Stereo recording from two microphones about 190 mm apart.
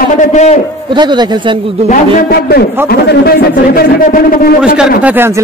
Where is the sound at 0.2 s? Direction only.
40° left (ahead or behind).